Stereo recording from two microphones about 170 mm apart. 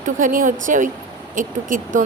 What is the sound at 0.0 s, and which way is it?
Speech, 50° right (ahead or behind).